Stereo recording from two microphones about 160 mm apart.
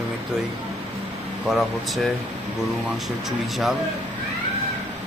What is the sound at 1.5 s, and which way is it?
Speech, centre (ahead or behind).